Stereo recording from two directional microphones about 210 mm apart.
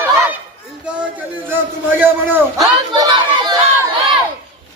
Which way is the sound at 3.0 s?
20° right (ahead or behind).